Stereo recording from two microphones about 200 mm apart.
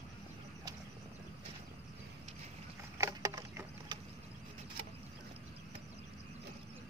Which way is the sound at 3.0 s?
15° right (ahead or behind).